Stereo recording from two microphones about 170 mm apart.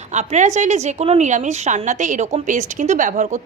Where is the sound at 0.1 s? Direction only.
45° right (ahead or behind).